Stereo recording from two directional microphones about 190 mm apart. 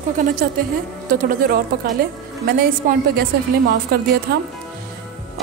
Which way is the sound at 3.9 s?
55° right (ahead or behind).